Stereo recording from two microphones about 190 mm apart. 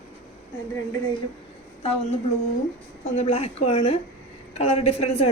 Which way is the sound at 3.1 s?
35° left (ahead or behind).